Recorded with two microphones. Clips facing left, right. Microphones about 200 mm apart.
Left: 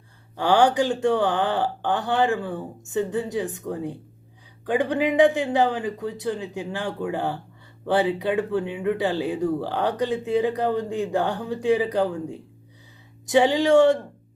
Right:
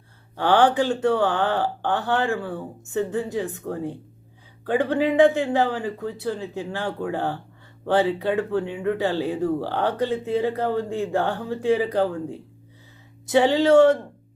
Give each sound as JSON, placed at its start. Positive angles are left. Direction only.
{"t": 0.3, "sound": "speech", "side_deg": 15}